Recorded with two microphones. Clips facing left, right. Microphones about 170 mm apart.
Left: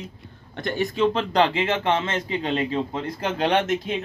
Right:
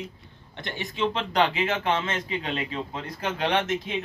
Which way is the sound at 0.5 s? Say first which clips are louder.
Left 9 dB; 45° left (ahead or behind).